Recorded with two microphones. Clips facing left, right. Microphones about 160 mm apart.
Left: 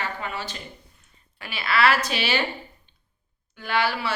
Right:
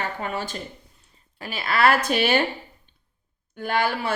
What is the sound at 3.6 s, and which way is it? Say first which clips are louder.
Speech: right 1 dB; 50° right (ahead or behind).